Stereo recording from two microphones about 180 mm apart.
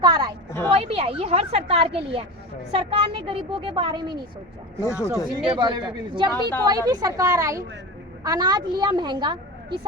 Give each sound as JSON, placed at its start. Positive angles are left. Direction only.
{"t": 0.0, "sound": "a sound", "side_deg": -20}
{"t": 0.7, "sound": "a woman's voice", "side_deg": -30}
{"t": 4.8, "sound": "speech", "side_deg": 15}
{"t": 5.5, "sound": "a woman's voice", "side_deg": -25}